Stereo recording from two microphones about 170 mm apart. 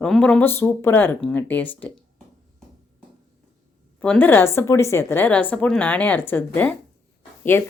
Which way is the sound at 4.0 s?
10° left (ahead or behind).